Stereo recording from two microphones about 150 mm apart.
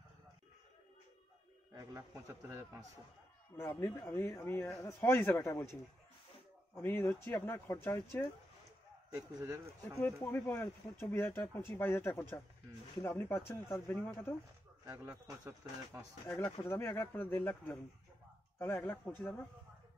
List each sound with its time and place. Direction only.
1.8 s a man's voice: 20° right (ahead or behind)
3.5 s speech: 15° left (ahead or behind)
9.1 s a man's voice: 20° right (ahead or behind)
10.3 s speech: 15° left (ahead or behind)
15.2 s speech: 10° right (ahead or behind)
16.4 s speech: 15° left (ahead or behind)